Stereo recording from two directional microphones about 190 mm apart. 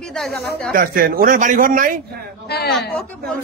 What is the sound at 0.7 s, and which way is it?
A man's voice, 50° right (ahead or behind).